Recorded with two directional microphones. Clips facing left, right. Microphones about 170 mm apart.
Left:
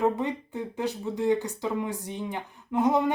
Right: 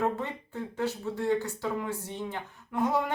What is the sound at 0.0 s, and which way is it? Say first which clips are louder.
Speech: left 4 dB; 15° left (ahead or behind).